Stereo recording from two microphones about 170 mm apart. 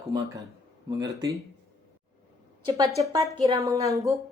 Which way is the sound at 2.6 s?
20° right (ahead or behind).